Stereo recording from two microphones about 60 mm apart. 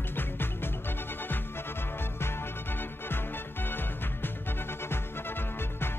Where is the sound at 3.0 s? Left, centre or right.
Left.